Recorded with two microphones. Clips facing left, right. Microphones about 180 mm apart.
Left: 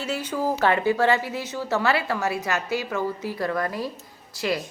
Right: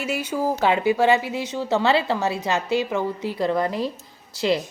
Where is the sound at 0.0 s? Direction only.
10° right (ahead or behind).